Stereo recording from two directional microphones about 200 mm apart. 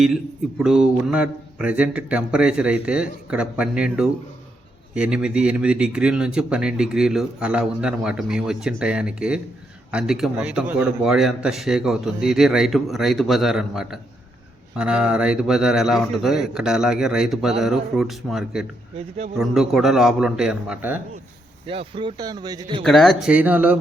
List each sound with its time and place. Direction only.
0.6 s speech: 5° right (ahead or behind)
21.7 s speech: 25° right (ahead or behind)
22.8 s speech: centre (ahead or behind)